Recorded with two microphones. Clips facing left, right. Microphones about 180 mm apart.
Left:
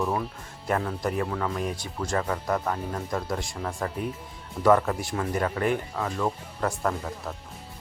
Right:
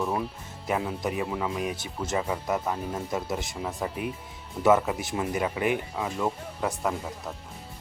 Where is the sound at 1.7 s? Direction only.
25° right (ahead or behind).